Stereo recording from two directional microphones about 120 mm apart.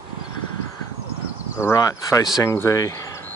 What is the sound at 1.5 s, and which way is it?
Speech, 25° left (ahead or behind).